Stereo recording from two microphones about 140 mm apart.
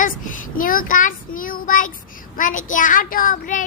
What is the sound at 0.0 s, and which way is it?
Child singing, 75° left (ahead or behind).